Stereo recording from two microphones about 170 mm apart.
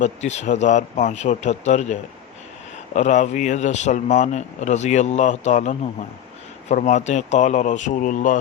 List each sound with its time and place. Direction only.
0.0 s speech: 40° left (ahead or behind)